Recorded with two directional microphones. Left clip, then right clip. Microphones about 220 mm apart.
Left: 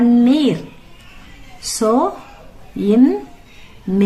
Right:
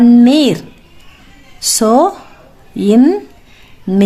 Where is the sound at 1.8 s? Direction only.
45° right (ahead or behind).